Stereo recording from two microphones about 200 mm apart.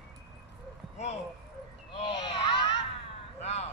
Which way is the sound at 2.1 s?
20° left (ahead or behind).